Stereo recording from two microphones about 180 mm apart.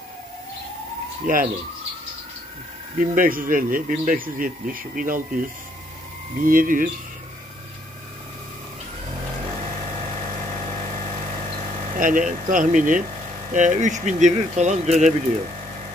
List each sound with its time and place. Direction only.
1.2 s speech: 50° right (ahead or behind)
3.0 s speech: 50° right (ahead or behind)
6.4 s speech: 50° right (ahead or behind)
12.0 s speech: 45° right (ahead or behind)